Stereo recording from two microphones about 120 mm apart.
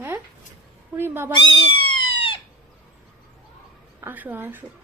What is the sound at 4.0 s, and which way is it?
Speech, 15° right (ahead or behind).